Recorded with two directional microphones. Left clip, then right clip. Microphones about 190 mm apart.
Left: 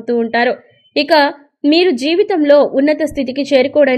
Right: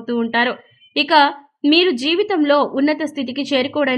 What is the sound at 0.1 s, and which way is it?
A woman's voice, centre (ahead or behind).